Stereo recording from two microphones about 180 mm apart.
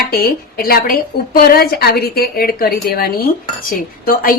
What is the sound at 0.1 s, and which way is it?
A woman's voice, 55° left (ahead or behind).